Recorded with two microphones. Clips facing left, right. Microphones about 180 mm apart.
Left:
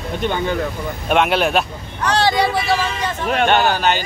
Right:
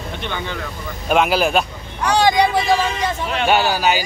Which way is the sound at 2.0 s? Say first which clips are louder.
Right 2 dB; 15° right (ahead or behind).